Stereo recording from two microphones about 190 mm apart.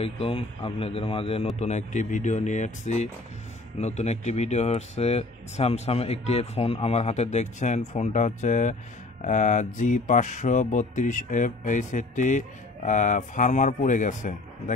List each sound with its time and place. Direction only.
0.0 s a man's voice: 30° left (ahead or behind)